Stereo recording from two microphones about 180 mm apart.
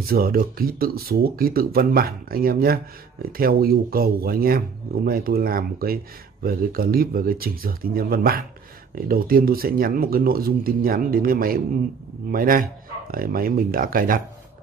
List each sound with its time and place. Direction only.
0.0 s speech: 55° right (ahead or behind)